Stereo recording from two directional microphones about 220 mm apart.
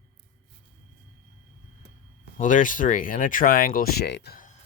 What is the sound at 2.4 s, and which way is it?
Speech, 35° left (ahead or behind).